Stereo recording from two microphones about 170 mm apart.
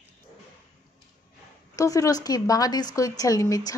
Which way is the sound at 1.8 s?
20° left (ahead or behind).